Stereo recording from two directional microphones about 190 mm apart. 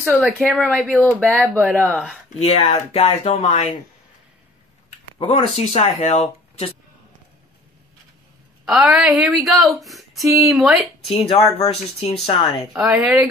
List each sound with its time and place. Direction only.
0.0 s a woman's voice: centre (ahead or behind)
2.3 s speech: 30° left (ahead or behind)
5.2 s speech: 35° left (ahead or behind)
8.6 s a woman's voice: centre (ahead or behind)
11.1 s speech: 30° left (ahead or behind)
12.7 s a woman's voice: centre (ahead or behind)